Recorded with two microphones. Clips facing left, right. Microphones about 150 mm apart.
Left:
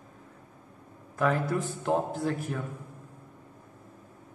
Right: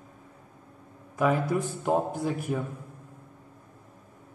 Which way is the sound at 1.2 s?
15° right (ahead or behind).